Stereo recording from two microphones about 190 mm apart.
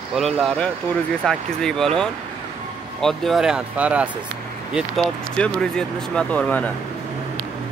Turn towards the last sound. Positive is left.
turn(degrees=5)  # may be behind; listen again after turning